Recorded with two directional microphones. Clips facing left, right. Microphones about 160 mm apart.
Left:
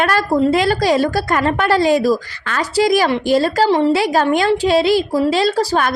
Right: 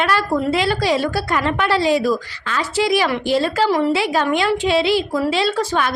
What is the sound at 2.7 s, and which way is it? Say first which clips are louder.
Speech: left 4 dB; 40° left (ahead or behind).